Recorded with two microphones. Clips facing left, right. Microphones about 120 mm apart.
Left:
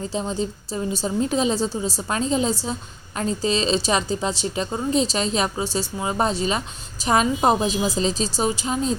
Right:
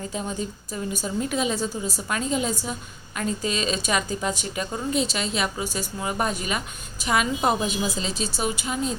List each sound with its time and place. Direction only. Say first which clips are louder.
0.1 s a woman's voice: left 4 dB; 30° left (ahead or behind)